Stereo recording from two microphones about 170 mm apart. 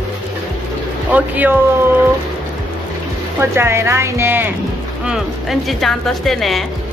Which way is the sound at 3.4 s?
15° right (ahead or behind).